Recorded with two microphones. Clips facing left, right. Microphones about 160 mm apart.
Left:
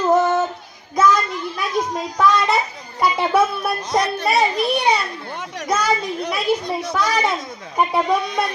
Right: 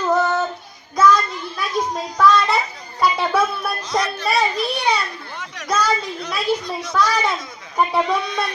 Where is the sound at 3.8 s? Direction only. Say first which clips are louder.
Left 2 dB; 55° left (ahead or behind).